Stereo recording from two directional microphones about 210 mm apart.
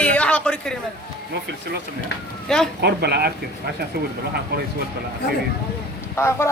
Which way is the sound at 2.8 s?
50° right (ahead or behind).